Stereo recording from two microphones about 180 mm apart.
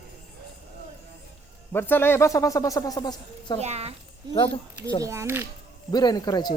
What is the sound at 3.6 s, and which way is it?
Speech, 35° right (ahead or behind).